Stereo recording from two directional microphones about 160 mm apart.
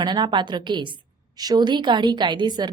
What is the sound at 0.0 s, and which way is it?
A woman's voice, 30° right (ahead or behind).